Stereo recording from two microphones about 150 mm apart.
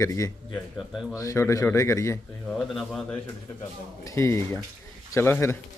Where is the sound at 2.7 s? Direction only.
Centre (ahead or behind).